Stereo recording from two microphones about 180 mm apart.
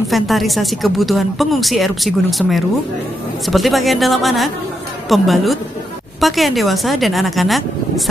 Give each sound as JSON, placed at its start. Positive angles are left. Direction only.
{"t": 0.1, "sound": "speech", "side_deg": 0}